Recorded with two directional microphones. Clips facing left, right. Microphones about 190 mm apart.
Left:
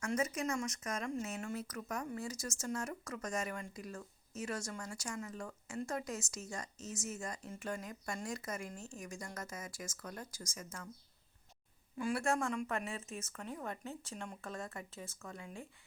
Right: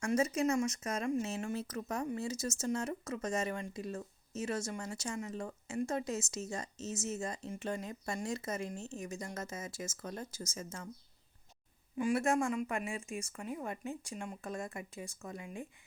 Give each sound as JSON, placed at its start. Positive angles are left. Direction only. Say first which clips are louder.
{"t": 0.2, "sound": "speech", "louder": "right 6 dB", "side_deg": -25}
{"t": 11.9, "sound": "speech", "louder": "right 4 dB", "side_deg": -20}